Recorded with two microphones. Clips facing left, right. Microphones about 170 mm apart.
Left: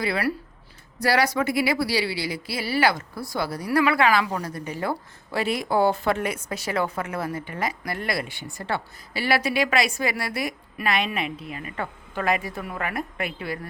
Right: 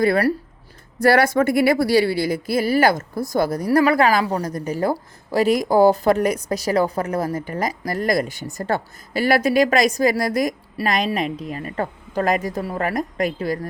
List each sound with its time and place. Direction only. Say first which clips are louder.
0.0 s a woman's voice: right 8 dB; 45° right (ahead or behind)